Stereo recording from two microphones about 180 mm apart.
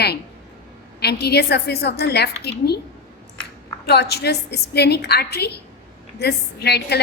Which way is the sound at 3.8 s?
65° left (ahead or behind).